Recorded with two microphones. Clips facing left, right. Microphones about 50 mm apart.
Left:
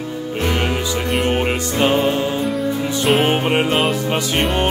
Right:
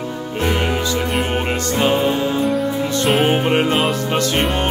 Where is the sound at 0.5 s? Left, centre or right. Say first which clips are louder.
Right 2 dB; centre.